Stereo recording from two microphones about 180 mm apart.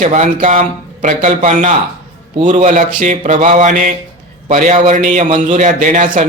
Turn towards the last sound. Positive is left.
turn(degrees=-45)  # may be behind; listen again after turning